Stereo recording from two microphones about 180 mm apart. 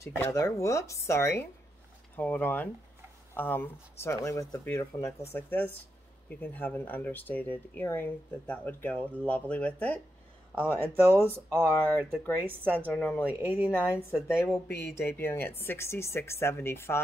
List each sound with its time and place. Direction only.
0.0 s speech: 15° left (ahead or behind)
10.5 s speech: 10° right (ahead or behind)
12.9 s speech: 5° left (ahead or behind)
13.3 s speech: 10° right (ahead or behind)
14.7 s speech: 65° left (ahead or behind)
15.0 s speech: 15° left (ahead or behind)